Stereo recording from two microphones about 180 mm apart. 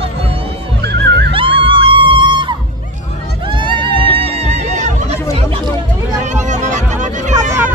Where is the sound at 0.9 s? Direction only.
70° right (ahead or behind).